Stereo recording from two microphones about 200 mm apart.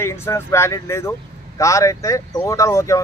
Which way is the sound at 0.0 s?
15° left (ahead or behind).